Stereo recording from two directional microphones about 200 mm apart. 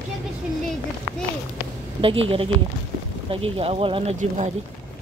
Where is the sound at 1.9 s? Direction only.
25° right (ahead or behind).